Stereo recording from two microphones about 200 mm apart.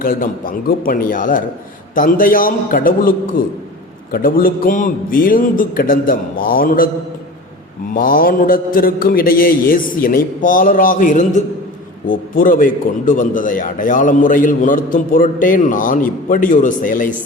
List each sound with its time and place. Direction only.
0.0 s a man's voice: 45° left (ahead or behind)
7.9 s a man's voice: 45° left (ahead or behind)